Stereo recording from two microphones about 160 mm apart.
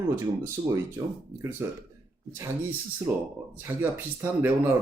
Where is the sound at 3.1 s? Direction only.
10° right (ahead or behind).